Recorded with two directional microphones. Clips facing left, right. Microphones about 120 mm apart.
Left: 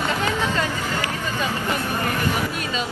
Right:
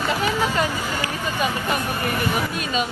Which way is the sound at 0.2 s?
15° right (ahead or behind).